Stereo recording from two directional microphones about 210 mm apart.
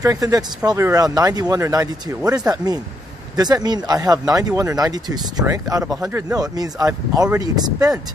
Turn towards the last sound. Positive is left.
turn(degrees=-15)  # may be behind; listen again after turning